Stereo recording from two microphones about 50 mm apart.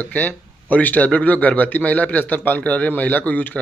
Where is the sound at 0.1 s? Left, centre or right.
Left.